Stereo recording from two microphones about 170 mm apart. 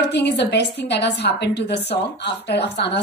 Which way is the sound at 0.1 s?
80° left.